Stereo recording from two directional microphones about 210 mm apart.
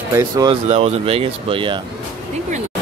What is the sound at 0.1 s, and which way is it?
Speech, 20° right (ahead or behind).